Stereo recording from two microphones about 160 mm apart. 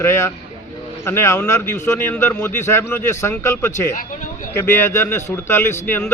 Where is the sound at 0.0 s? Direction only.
15° left (ahead or behind).